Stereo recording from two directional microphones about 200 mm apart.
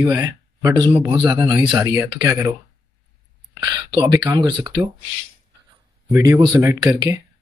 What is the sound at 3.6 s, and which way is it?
Speech, 25° right (ahead or behind).